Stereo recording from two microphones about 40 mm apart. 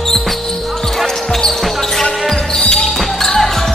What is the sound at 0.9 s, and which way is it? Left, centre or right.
Basketball bounce, centre.